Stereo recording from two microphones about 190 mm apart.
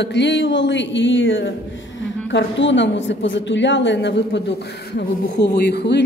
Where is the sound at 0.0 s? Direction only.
65° left (ahead or behind).